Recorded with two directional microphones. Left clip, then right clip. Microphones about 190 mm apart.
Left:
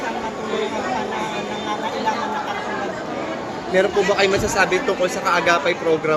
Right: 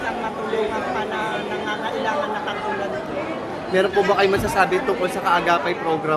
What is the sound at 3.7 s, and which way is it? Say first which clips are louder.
Speech: left 1 dB; 30° right (ahead or behind).